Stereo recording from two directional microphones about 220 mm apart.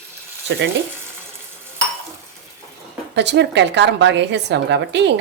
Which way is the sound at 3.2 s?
50° right (ahead or behind).